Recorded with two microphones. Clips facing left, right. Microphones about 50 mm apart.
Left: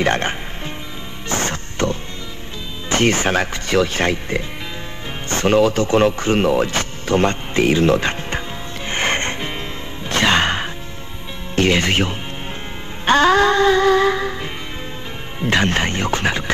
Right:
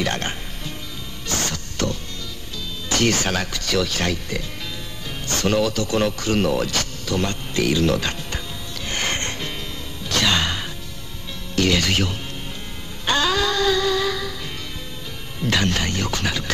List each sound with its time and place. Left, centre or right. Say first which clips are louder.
0.0 s music: left 6 dB; left
2.9 s speech: left 4 dB; left
8.8 s music: left 5 dB; left
11.5 s speech: left 3 dB; left
13.0 s music: left 7 dB; left
15.4 s speech: left 4 dB; left